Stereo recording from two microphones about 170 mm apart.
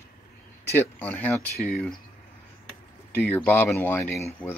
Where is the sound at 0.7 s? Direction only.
10° left (ahead or behind).